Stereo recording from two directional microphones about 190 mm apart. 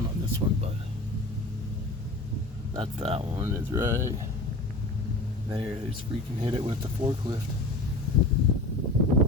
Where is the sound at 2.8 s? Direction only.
30° right (ahead or behind).